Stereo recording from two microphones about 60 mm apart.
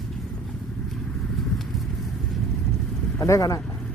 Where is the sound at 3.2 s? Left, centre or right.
Left.